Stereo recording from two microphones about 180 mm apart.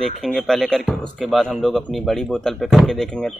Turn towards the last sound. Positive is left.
turn(degrees=5)  # may be behind; listen again after turning